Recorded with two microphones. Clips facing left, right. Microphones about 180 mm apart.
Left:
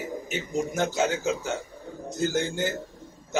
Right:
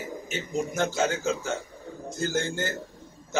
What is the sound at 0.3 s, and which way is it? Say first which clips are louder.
A man's voice: even; 15° left (ahead or behind).